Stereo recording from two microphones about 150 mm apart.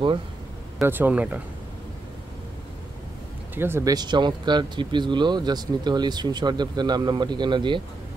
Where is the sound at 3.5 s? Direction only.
15° right (ahead or behind).